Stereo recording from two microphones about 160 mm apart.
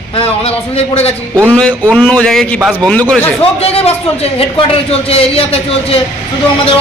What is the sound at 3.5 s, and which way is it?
A man's voice, 40° left (ahead or behind).